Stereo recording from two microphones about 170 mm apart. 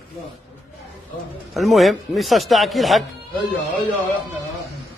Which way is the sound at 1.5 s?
Centre (ahead or behind).